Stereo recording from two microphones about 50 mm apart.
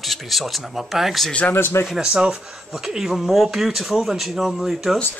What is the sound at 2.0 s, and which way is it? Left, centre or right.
Speech, centre.